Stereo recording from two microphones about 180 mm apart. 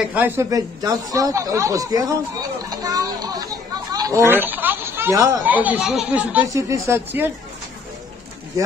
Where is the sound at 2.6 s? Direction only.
20° right (ahead or behind).